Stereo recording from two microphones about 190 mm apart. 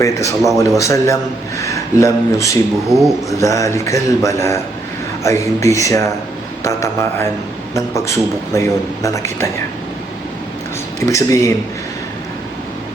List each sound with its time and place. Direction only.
0.0 s a man's voice: 15° left (ahead or behind)
11.0 s a man's voice: 15° left (ahead or behind)